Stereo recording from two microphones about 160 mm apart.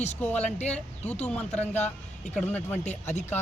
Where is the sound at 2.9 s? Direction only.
45° left (ahead or behind).